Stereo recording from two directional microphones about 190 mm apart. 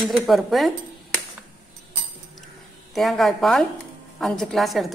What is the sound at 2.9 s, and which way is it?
Speech, centre (ahead or behind).